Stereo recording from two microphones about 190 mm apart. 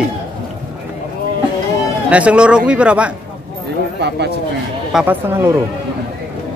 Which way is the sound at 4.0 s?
60° right (ahead or behind).